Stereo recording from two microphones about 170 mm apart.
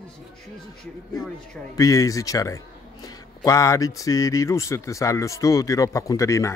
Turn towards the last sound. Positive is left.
turn(degrees=20)  # may be behind; listen again after turning